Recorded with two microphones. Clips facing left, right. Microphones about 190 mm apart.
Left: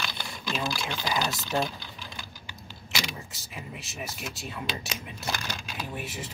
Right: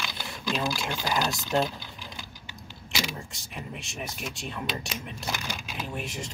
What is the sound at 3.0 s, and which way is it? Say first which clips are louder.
Speech: right 2 dB; centre (ahead or behind).